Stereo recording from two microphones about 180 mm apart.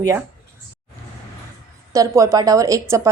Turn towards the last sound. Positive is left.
turn(degrees=-15)  # may be behind; listen again after turning